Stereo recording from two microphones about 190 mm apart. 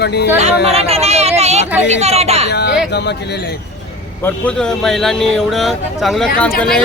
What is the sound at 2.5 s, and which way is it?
Speech, 60° left (ahead or behind).